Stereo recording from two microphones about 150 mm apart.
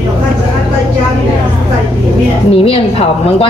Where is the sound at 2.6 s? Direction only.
40° left (ahead or behind).